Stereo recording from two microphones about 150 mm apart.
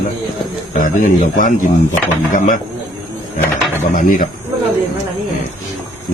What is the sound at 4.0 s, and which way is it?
Speech, 65° left (ahead or behind).